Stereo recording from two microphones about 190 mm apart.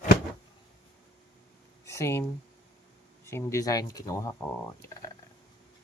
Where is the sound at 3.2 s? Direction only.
15° left (ahead or behind).